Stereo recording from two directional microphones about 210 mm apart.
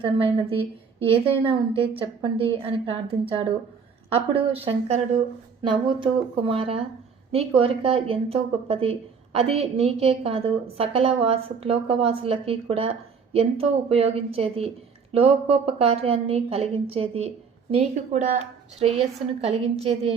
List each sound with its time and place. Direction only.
0.0 s a woman's voice: 25° right (ahead or behind)
4.6 s a woman's voice: 25° right (ahead or behind)